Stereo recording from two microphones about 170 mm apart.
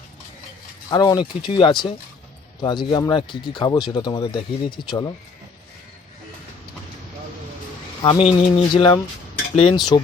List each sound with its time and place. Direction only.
0.9 s speech: 25° left (ahead or behind)
8.0 s speech: 35° left (ahead or behind)